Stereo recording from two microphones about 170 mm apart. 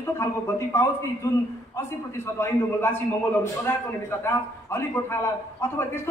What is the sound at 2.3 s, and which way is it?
Speech, 15° left (ahead or behind).